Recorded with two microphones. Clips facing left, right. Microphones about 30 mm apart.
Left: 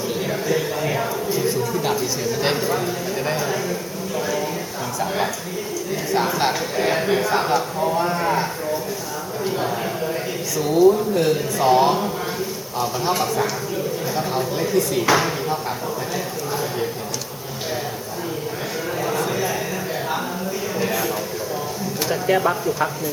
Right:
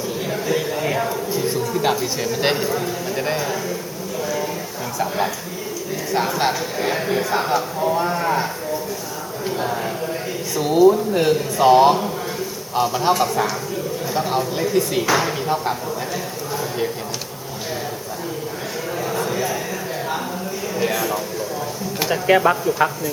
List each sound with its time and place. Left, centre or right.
0.3 s a sound: centre
2.0 s speech: centre
2.6 s speech: centre
3.2 s speech: centre
6.1 s speech: centre
9.4 s a sound: centre
10.6 s speech: right
19.0 s a sound: centre
22.0 s speech: centre
22.8 s speech: right